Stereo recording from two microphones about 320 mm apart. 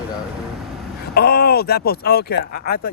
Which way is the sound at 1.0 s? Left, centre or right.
Left.